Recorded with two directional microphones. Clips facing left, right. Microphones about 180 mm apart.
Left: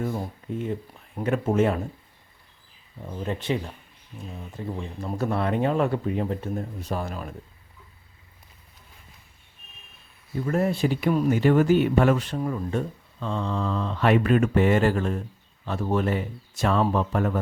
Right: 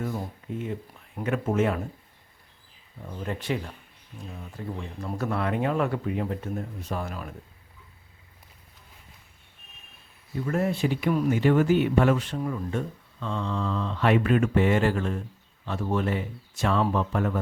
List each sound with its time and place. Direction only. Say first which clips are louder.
0.4 s speech: left 3 dB; 35° left (ahead or behind)
3.2 s speech: left 2 dB; 25° left (ahead or behind)
10.4 s speech: left 2 dB; 35° left (ahead or behind)